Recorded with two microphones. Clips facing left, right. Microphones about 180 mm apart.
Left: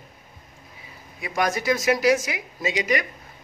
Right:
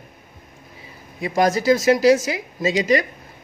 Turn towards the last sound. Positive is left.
turn(degrees=-30)  # may be behind; listen again after turning